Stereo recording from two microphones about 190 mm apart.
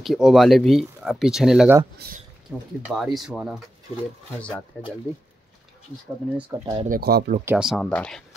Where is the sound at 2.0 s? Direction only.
55° right (ahead or behind).